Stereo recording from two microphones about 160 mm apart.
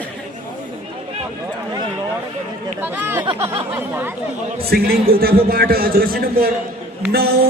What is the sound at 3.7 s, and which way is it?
Speech, 15° right (ahead or behind).